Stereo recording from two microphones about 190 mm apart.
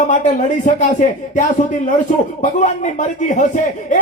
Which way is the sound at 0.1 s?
40° left (ahead or behind).